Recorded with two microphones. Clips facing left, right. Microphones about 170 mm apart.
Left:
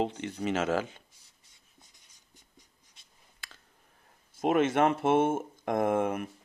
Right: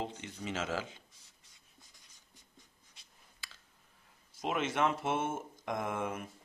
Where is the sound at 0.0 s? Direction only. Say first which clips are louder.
Left 9 dB; 65° left (ahead or behind).